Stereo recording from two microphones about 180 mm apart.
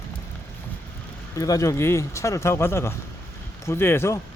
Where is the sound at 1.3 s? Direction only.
20° left (ahead or behind).